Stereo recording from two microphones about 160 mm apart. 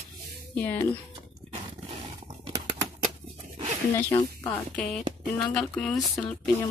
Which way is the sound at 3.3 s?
40° right (ahead or behind).